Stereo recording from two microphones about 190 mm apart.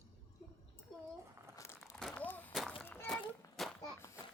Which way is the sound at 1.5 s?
15° left (ahead or behind).